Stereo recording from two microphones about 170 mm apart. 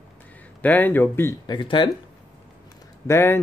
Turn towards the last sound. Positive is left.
turn(degrees=15)  # may be behind; listen again after turning